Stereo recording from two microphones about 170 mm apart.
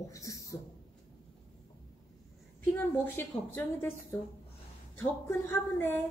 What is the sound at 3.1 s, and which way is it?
Speech, 10° left (ahead or behind).